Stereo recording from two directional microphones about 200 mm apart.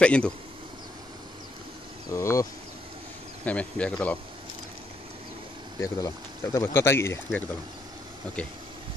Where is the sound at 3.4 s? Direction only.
5° left (ahead or behind).